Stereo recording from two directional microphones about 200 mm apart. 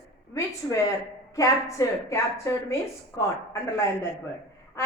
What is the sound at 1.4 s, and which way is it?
A woman's voice, 15° left (ahead or behind).